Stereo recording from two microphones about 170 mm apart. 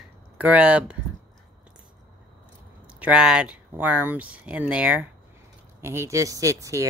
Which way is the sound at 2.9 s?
5° right (ahead or behind).